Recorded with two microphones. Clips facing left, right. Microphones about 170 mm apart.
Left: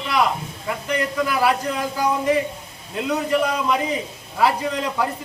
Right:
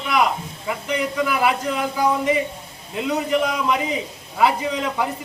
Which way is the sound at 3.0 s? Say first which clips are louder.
Even; centre (ahead or behind).